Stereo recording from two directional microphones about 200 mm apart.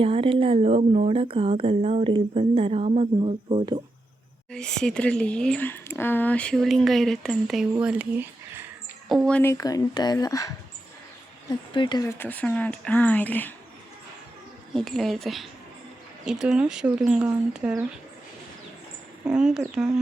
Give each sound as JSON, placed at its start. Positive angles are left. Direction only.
{"t": 0.0, "sound": "speech", "side_deg": -25}
{"t": 4.5, "sound": "speech", "side_deg": 5}
{"t": 9.2, "sound": "speech", "side_deg": 10}
{"t": 11.7, "sound": "speech", "side_deg": 25}
{"t": 14.8, "sound": "speech", "side_deg": 0}
{"t": 19.2, "sound": "speech", "side_deg": -5}